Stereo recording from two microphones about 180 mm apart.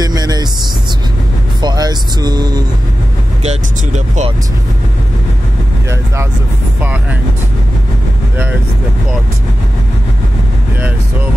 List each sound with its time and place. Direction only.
0.0 s vehicle: 20° right (ahead or behind)
1.6 s speech: 25° right (ahead or behind)
3.4 s speech: 40° right (ahead or behind)
6.8 s speech: 10° right (ahead or behind)